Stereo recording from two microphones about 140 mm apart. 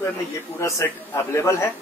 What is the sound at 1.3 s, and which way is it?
Speech, 20° left (ahead or behind).